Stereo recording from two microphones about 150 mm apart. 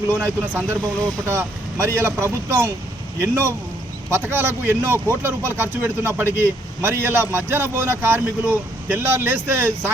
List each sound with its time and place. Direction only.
0.1 s a man's voice: 20° right (ahead or behind)